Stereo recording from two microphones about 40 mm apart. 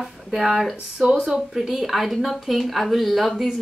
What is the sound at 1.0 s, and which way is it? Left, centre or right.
Speech, right.